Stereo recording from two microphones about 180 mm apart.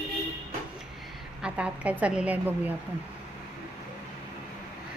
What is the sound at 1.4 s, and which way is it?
A woman's voice, 5° right (ahead or behind).